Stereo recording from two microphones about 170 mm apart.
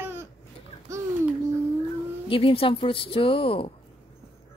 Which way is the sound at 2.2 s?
30° left (ahead or behind).